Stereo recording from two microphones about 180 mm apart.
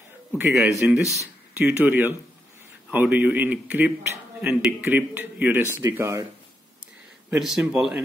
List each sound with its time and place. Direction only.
0.6 s speech: 5° right (ahead or behind)
1.0 s speech: 15° left (ahead or behind)
1.6 s speech: 10° right (ahead or behind)
7.2 s speech: 5° right (ahead or behind)